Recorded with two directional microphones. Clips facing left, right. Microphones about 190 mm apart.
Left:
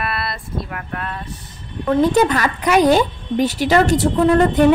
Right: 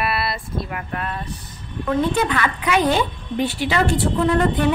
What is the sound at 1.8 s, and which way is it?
A woman's voice, 40° left (ahead or behind).